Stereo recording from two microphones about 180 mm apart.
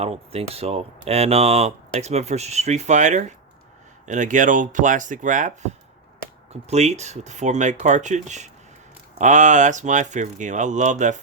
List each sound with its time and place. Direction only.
0.0 s speech: 35° right (ahead or behind)